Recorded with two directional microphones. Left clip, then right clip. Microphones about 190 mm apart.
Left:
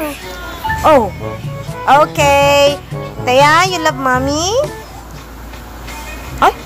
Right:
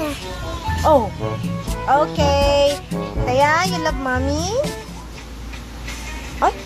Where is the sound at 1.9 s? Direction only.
15° left (ahead or behind).